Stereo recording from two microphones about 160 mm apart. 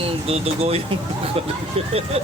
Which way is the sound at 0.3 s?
40° right (ahead or behind).